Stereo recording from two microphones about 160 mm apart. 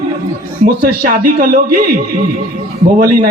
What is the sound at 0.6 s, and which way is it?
A man's voice, 60° right (ahead or behind).